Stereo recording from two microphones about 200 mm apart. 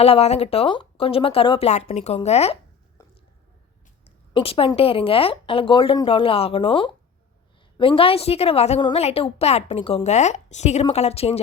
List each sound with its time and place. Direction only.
0.0 s a woman's voice: 30° left (ahead or behind)
3.0 s a sound: 15° left (ahead or behind)
4.0 s a woman's voice: 30° left (ahead or behind)